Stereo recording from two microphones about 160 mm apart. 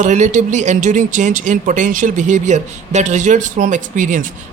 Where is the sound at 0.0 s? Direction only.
50° right (ahead or behind).